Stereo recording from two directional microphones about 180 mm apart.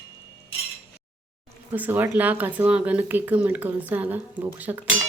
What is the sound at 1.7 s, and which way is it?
Speech, 10° right (ahead or behind).